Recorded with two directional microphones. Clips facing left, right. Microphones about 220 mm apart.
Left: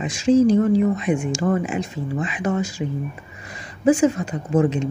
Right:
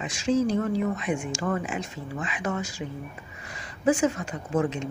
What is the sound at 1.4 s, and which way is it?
Speech, 25° left (ahead or behind).